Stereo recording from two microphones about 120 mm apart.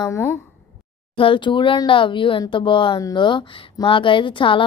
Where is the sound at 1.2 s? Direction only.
45° left (ahead or behind).